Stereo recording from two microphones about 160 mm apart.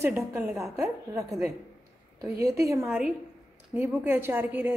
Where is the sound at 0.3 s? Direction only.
15° right (ahead or behind).